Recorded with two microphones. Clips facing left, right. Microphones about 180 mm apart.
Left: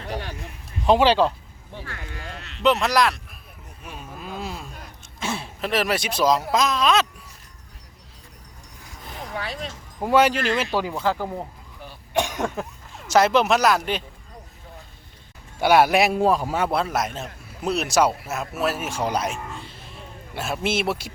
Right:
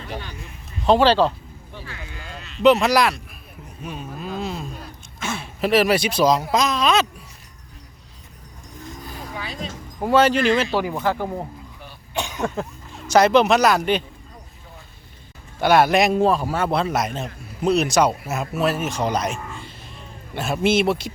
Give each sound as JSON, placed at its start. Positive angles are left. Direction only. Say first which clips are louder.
{"t": 0.9, "sound": "a man's voice", "louder": "right 1 dB", "side_deg": 15}
{"t": 1.8, "sound": "speech", "louder": "left 2 dB", "side_deg": 55}
{"t": 2.6, "sound": "speech", "louder": "right 4 dB", "side_deg": 0}
{"t": 5.2, "sound": "speech", "louder": "even", "side_deg": 35}
{"t": 5.5, "sound": "speech", "louder": "right 7 dB", "side_deg": -5}
{"t": 9.3, "sound": "a sound", "louder": "left 3 dB", "side_deg": 65}
{"t": 10.1, "sound": "a man's voice", "louder": "right 2 dB", "side_deg": 10}
{"t": 10.7, "sound": "speech", "louder": "right 2 dB", "side_deg": -15}
{"t": 12.5, "sound": "speech", "louder": "right 3 dB", "side_deg": 0}
{"t": 15.6, "sound": "a man's voice", "louder": "right 1 dB", "side_deg": 10}
{"t": 16.6, "sound": "speech", "louder": "right 4 dB", "side_deg": 0}